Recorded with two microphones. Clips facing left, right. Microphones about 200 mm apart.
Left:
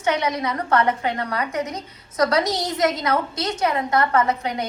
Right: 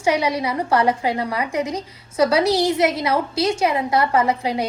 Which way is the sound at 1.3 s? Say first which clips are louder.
Right 3 dB; 30° right (ahead or behind).